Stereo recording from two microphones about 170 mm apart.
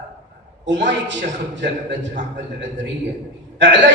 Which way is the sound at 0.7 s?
90° right.